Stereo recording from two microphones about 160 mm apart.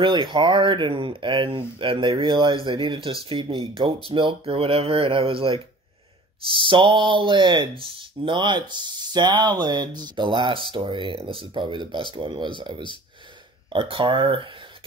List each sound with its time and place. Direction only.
0.0 s speech: 30° right (ahead or behind)